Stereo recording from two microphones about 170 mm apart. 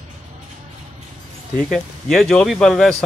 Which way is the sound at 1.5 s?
Centre (ahead or behind).